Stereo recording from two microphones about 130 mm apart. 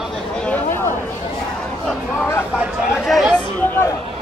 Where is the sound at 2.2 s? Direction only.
20° left (ahead or behind).